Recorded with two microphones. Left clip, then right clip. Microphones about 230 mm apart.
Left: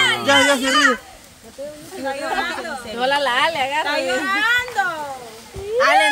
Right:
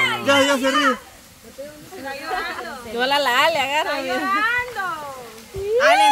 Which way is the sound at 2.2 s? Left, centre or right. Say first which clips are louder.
Left 2 dB; left.